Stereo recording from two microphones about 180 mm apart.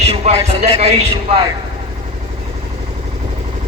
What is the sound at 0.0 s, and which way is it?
A man's voice, 35° right (ahead or behind).